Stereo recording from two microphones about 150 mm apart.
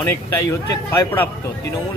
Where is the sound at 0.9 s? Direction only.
15° left (ahead or behind).